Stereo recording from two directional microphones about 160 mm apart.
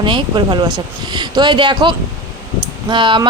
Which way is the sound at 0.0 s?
30° right (ahead or behind).